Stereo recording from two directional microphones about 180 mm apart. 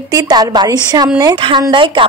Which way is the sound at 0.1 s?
20° right (ahead or behind).